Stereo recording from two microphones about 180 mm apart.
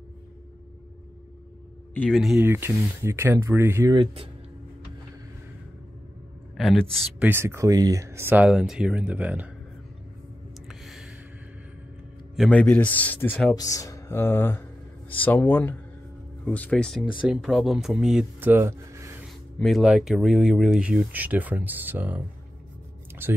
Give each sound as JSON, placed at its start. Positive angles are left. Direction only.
{"t": 2.0, "sound": "speech", "side_deg": 0}
{"t": 2.4, "sound": "speech", "side_deg": -15}
{"t": 6.5, "sound": "speech", "side_deg": 0}
{"t": 7.2, "sound": "speech", "side_deg": -15}
{"t": 10.7, "sound": "a sound", "side_deg": 0}
{"t": 12.4, "sound": "speech", "side_deg": 10}
{"t": 19.6, "sound": "speech", "side_deg": 0}
{"t": 23.2, "sound": "speech", "side_deg": -10}